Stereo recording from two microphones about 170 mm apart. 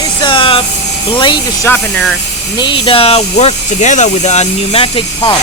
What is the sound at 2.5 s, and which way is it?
Speech, 30° left (ahead or behind).